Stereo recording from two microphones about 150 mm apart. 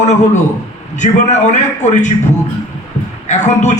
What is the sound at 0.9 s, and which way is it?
A man's voice, 50° left (ahead or behind).